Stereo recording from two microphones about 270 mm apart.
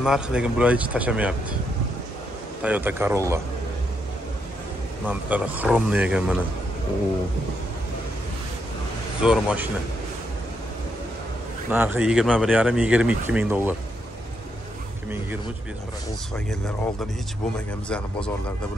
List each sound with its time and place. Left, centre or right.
0.0 s speech: centre
2.6 s a man's voice: centre
5.0 s speech: centre
9.2 s speech: centre
11.7 s speech: centre
16.4 s speech: centre